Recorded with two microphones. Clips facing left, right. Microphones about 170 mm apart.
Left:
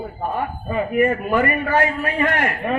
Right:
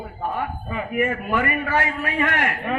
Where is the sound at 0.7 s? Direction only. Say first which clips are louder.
Left 6 dB; 40° left (ahead or behind).